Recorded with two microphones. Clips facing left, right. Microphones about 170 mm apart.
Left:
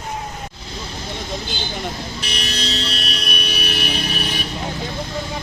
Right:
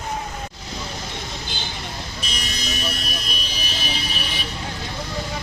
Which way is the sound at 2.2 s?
70° left (ahead or behind).